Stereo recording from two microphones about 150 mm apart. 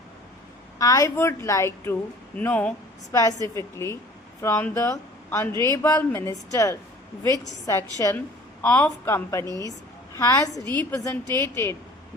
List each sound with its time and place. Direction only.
0.8 s a woman's voice: 20° left (ahead or behind)
3.1 s a woman's voice: 20° left (ahead or behind)